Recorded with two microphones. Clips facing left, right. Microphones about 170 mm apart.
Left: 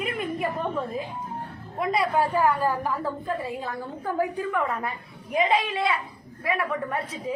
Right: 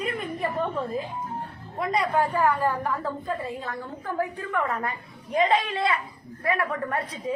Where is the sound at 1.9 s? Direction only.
10° left (ahead or behind).